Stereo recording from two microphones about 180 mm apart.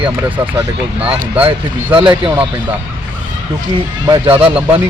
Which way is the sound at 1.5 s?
30° right (ahead or behind).